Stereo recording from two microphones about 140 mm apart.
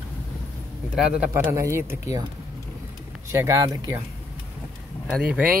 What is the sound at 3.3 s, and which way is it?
Speech, 20° right (ahead or behind).